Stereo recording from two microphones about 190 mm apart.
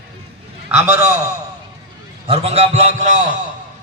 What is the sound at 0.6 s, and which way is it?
Speech, 10° right (ahead or behind).